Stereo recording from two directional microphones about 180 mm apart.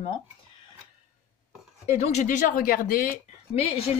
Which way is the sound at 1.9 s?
40° left (ahead or behind).